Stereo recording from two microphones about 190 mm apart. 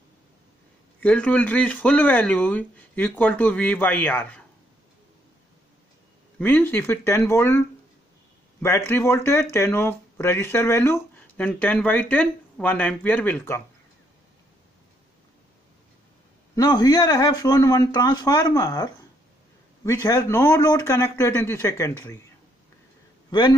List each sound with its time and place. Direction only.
1.0 s speech: 5° left (ahead or behind)
6.3 s speech: 10° left (ahead or behind)
16.5 s speech: 20° left (ahead or behind)